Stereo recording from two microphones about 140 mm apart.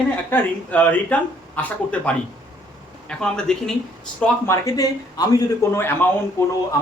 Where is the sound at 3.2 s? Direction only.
5° left (ahead or behind).